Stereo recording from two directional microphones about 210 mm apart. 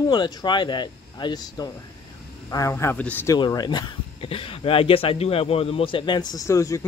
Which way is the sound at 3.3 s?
20° left (ahead or behind).